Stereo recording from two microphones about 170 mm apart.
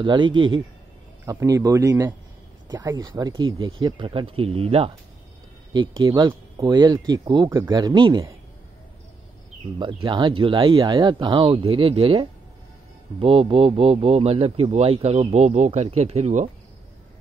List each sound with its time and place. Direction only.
0.0 s speech: 25° right (ahead or behind)
9.8 s speech: 25° right (ahead or behind)